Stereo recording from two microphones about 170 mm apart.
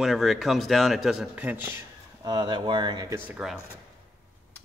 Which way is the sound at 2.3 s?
25° right (ahead or behind).